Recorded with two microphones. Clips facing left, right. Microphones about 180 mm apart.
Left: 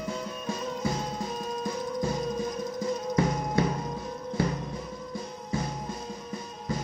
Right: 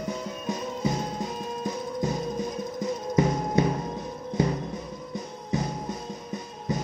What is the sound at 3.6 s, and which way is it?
Music, 20° right (ahead or behind).